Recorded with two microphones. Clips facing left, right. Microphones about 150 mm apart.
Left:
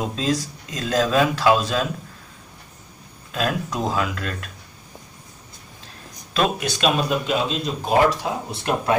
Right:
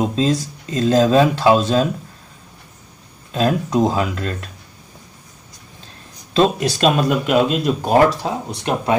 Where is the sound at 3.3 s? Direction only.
30° right (ahead or behind).